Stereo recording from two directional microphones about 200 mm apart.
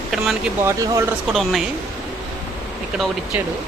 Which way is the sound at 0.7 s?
15° right (ahead or behind).